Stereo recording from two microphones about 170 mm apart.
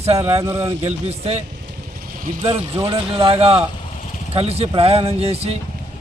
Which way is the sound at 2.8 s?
35° right (ahead or behind).